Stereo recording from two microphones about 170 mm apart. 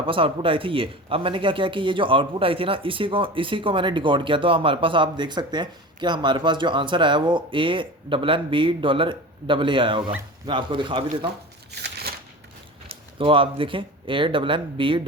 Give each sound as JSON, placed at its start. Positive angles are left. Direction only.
{"t": 0.0, "sound": "speech", "side_deg": -30}
{"t": 11.7, "sound": "shuffling cards", "side_deg": -70}
{"t": 13.1, "sound": "speech", "side_deg": -30}